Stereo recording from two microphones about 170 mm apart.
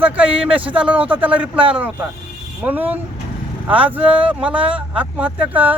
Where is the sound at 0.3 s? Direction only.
30° right (ahead or behind).